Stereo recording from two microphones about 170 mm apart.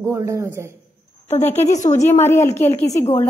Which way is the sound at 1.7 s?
45° left (ahead or behind).